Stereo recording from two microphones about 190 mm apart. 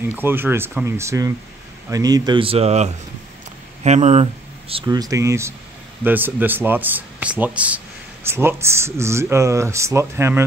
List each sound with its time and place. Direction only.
0.1 s speech: 10° right (ahead or behind)